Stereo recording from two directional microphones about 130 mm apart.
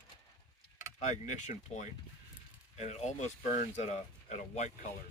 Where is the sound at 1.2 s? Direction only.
65° left (ahead or behind).